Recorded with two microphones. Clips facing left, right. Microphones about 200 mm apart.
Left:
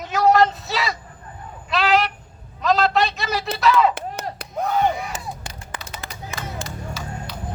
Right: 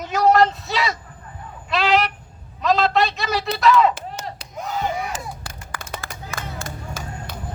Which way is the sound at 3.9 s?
60° left (ahead or behind).